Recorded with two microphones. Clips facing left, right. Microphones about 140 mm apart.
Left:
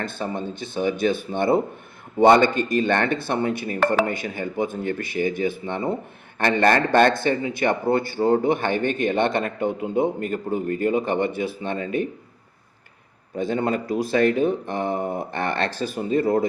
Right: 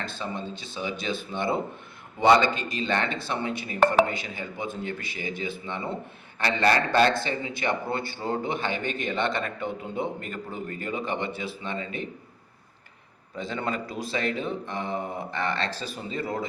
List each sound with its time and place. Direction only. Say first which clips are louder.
0.0 s speech: left 5 dB; 55° left (ahead or behind)
13.3 s speech: left 7 dB; 50° left (ahead or behind)